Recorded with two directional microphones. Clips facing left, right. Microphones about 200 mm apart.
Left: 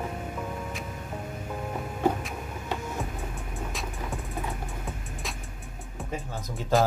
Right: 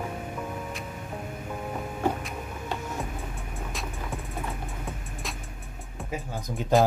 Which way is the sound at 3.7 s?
Centre (ahead or behind).